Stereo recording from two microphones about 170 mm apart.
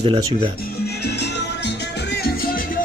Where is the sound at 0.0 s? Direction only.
30° right (ahead or behind).